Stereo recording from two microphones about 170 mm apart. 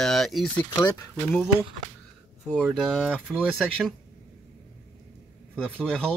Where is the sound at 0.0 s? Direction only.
Centre (ahead or behind).